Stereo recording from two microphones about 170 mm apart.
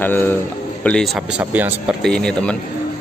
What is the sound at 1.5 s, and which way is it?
Speech, 10° right (ahead or behind).